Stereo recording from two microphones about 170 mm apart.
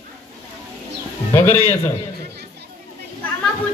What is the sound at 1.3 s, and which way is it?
Speech, 15° left (ahead or behind).